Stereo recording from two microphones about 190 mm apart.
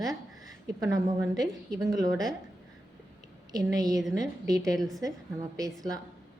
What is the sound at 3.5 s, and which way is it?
Speech, 20° right (ahead or behind).